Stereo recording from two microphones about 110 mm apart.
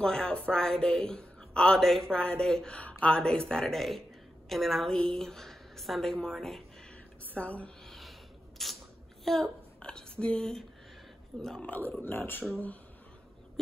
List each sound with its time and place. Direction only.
0.0 s a woman's voice: 10° left (ahead or behind)
7.3 s a sound: 10° left (ahead or behind)
11.4 s a woman's voice: 10° left (ahead or behind)